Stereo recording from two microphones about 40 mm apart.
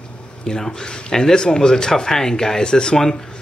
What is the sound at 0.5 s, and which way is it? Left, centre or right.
Speech, centre.